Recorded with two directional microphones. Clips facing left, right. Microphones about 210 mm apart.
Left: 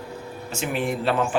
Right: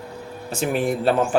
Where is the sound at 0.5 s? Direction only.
40° right (ahead or behind).